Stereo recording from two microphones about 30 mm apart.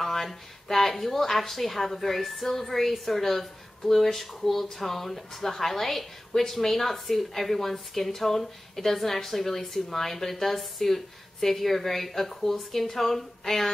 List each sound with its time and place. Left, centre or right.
0.0 s a woman's voice: centre